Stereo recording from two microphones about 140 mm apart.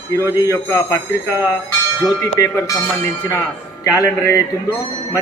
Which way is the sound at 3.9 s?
25° left (ahead or behind).